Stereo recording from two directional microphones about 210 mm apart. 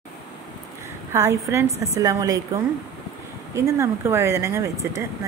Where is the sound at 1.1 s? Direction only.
15° right (ahead or behind).